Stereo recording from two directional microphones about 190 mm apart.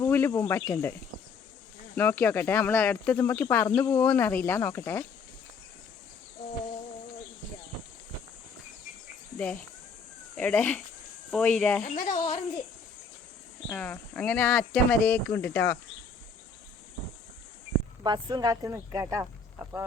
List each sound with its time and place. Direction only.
0.0 s speech: 15° left (ahead or behind)
2.0 s speech: 10° left (ahead or behind)
10.3 s speech: 10° left (ahead or behind)
11.9 s speech: 35° left (ahead or behind)
13.7 s speech: 10° left (ahead or behind)
18.0 s speech: 20° right (ahead or behind)